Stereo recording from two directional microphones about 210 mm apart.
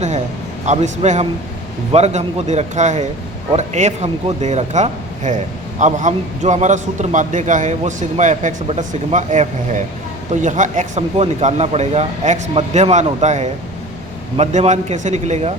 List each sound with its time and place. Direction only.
0.6 s a man's voice: 35° right (ahead or behind)